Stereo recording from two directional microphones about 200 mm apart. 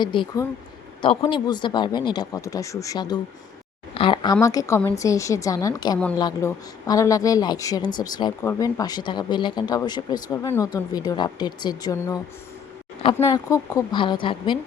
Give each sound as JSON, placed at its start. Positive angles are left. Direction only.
{"t": 0.0, "sound": "a woman's voice", "side_deg": 25}